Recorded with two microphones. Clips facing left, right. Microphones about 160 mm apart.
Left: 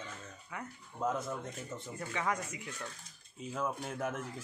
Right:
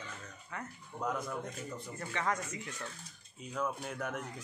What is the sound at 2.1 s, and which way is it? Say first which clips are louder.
Speech: even; 10° left (ahead or behind).